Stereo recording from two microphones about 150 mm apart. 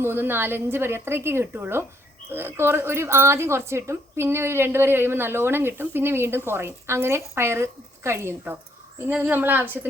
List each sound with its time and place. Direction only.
0.0 s a woman's voice: 15° right (ahead or behind)